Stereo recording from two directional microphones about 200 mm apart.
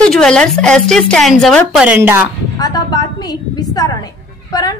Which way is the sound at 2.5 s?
20° left (ahead or behind).